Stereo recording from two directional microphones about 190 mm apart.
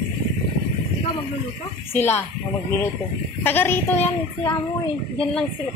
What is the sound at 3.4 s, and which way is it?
Speech, 10° left (ahead or behind).